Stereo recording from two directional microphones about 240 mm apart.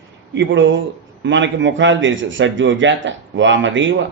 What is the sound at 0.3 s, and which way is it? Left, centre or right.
A man's voice, right.